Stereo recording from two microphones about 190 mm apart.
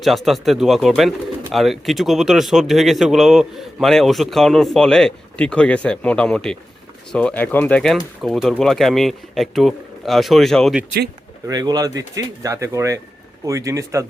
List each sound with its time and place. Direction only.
0.0 s speech: centre (ahead or behind)
11.4 s speech: 20° right (ahead or behind)